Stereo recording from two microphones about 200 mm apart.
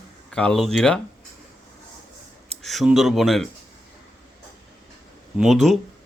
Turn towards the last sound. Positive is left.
turn(degrees=0)  # may be behind; listen again after turning